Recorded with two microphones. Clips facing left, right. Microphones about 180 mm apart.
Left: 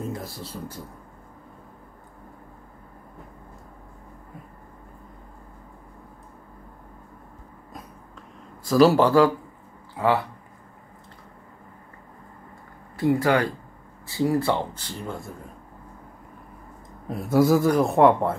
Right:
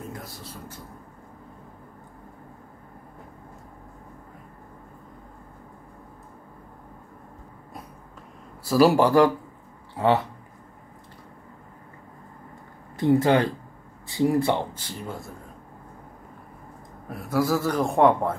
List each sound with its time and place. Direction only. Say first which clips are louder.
0.2 s speech: left 5 dB; 30° left (ahead or behind)
8.6 s speech: left 1 dB; 10° right (ahead or behind)
12.9 s speech: right 1 dB; 20° right (ahead or behind)
14.7 s speech: left 1 dB; 5° right (ahead or behind)
17.1 s a man's voice: left 5 dB; 25° left (ahead or behind); by 18.3 s centre (ahead or behind)